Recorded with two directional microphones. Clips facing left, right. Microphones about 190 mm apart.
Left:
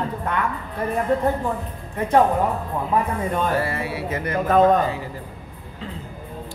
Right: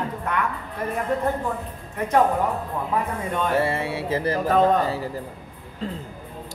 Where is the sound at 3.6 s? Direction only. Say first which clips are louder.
Right 2 dB; 25° right (ahead or behind).